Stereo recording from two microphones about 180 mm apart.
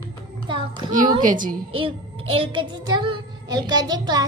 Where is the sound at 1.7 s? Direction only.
30° right (ahead or behind).